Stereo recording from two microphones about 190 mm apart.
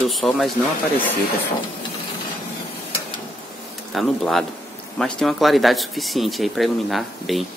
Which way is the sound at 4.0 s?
Centre (ahead or behind).